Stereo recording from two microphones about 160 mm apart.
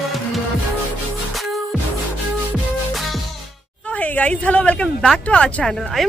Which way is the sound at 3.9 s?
10° left (ahead or behind).